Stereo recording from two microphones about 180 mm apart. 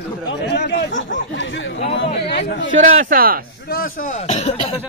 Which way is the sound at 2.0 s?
70° left (ahead or behind).